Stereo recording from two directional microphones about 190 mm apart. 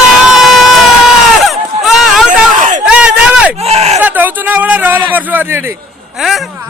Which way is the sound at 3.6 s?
35° right (ahead or behind).